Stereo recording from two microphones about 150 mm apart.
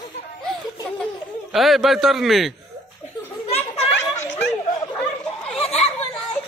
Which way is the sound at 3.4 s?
45° left (ahead or behind).